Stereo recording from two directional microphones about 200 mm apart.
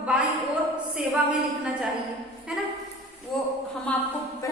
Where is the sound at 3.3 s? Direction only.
Centre (ahead or behind).